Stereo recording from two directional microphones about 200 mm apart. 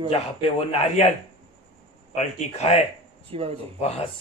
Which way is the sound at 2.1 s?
35° left (ahead or behind).